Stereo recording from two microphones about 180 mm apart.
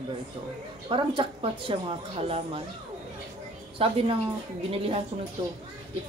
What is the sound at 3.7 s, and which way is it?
Speech, 30° right (ahead or behind).